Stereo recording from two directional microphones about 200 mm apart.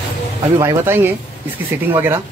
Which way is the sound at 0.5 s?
15° right (ahead or behind).